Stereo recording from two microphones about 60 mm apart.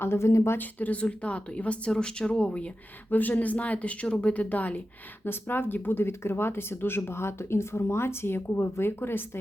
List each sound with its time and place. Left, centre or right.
0.0 s a woman's voice: left
0.5 s speech: left
3.1 s speech: left
5.2 s speech: left